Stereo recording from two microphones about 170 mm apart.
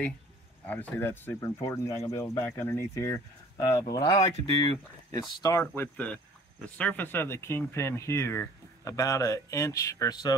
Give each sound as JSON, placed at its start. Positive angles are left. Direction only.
{"t": 0.7, "sound": "speech", "side_deg": 10}